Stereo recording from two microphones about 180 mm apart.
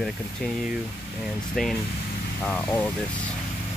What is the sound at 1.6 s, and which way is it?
Speech, centre (ahead or behind).